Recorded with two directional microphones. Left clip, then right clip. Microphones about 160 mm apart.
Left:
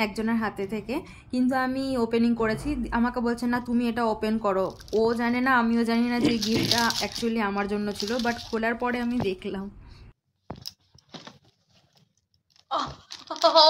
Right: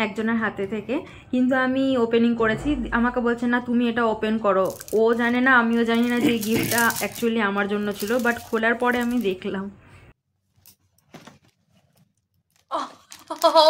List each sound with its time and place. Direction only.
0.2 s speech: 15° left (ahead or behind)
1.0 s speech: 25° left (ahead or behind); by 9.7 s 10° left (ahead or behind)
12.6 s a sound: 55° right (ahead or behind)